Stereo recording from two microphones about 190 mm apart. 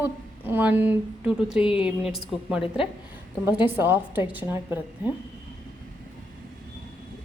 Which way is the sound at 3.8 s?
10° right (ahead or behind).